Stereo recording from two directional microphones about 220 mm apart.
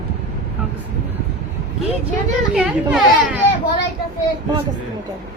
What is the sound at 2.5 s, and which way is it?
Speech, 5° right (ahead or behind).